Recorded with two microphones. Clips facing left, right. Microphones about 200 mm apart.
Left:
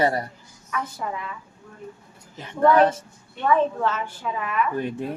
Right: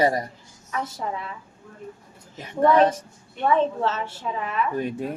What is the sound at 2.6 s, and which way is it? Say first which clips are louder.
Speech: even; 15° right (ahead or behind).